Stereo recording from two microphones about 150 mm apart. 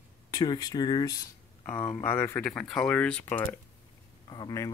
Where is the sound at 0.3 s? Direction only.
25° left (ahead or behind).